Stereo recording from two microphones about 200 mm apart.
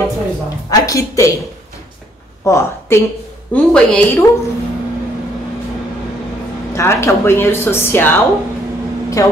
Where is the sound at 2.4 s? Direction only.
15° left (ahead or behind).